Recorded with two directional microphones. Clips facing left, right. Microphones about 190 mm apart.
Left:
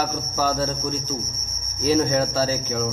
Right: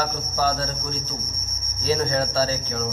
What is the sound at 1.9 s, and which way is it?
Speech, 15° left (ahead or behind).